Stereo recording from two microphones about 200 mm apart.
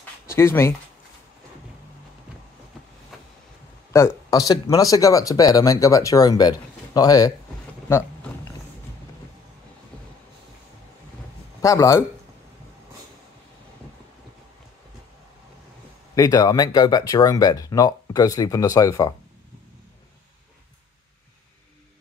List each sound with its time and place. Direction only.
0.4 s speech: 10° left (ahead or behind)
3.9 s speech: 15° left (ahead or behind)
11.6 s speech: 15° left (ahead or behind)
16.2 s speech: 20° left (ahead or behind)